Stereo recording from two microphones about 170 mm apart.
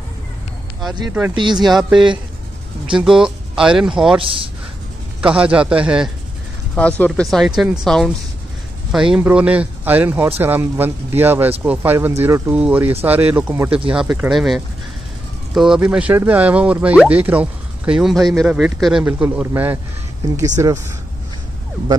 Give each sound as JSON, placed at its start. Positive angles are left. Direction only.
{"t": 1.3, "sound": "speech", "side_deg": -25}
{"t": 1.6, "sound": "speech", "side_deg": 0}
{"t": 5.2, "sound": "speech", "side_deg": -5}
{"t": 6.7, "sound": "speech", "side_deg": 5}